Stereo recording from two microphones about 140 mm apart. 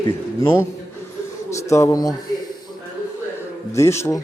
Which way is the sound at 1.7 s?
25° left (ahead or behind).